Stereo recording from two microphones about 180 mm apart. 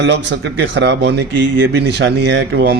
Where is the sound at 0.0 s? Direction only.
75° right (ahead or behind).